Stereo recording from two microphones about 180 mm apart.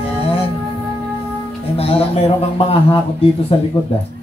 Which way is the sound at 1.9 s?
30° left (ahead or behind).